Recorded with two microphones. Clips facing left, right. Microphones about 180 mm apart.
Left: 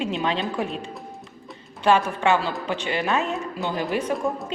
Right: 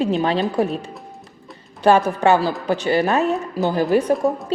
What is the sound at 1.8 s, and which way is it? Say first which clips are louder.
A woman's voice: right 5 dB; 40° right (ahead or behind).